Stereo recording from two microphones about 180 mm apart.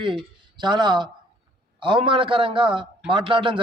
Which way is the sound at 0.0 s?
30° right (ahead or behind).